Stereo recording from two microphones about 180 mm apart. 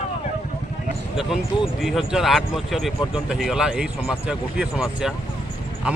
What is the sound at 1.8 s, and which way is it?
Speech, centre (ahead or behind).